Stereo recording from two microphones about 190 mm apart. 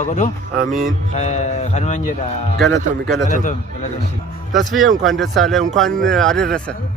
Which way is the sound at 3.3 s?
40° left (ahead or behind).